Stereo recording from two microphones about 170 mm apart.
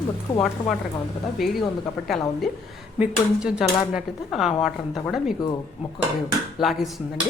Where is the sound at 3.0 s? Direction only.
5° right (ahead or behind).